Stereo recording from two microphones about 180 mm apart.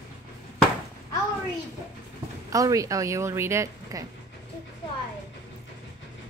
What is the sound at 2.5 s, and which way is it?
A woman's voice, 20° right (ahead or behind).